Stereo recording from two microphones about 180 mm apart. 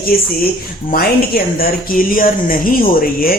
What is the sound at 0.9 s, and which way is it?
Speech, 55° left (ahead or behind).